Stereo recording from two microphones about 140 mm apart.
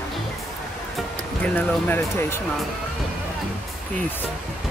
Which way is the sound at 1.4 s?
15° left (ahead or behind).